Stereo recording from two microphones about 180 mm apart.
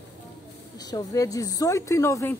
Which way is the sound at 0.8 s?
20° left (ahead or behind).